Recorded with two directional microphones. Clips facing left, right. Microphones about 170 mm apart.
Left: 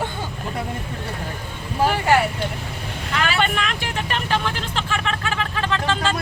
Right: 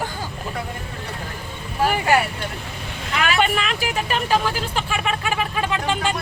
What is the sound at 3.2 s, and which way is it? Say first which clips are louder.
Vehicle: right 2 dB; 5° right (ahead or behind).